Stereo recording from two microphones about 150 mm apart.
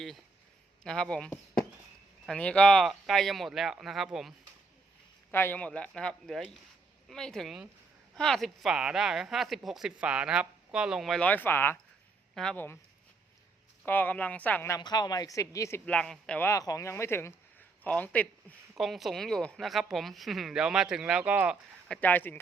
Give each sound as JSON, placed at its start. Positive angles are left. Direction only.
{"t": 0.9, "sound": "speech", "side_deg": 5}
{"t": 5.3, "sound": "speech", "side_deg": 15}
{"t": 13.8, "sound": "speech", "side_deg": 15}
{"t": 14.8, "sound": "speech", "side_deg": 30}
{"t": 15.9, "sound": "speech", "side_deg": 5}
{"t": 16.5, "sound": "speech", "side_deg": 20}
{"t": 18.8, "sound": "speech", "side_deg": 0}
{"t": 21.8, "sound": "speech", "side_deg": 10}